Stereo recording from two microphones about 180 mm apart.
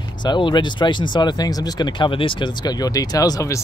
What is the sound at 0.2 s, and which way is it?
Speech, 25° left (ahead or behind).